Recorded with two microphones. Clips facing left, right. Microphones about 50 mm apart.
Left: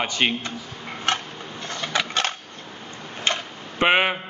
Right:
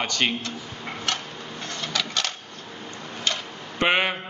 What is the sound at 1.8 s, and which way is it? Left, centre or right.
Cash register, left.